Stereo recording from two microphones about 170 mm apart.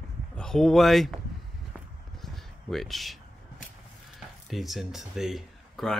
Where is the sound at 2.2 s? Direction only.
Centre (ahead or behind).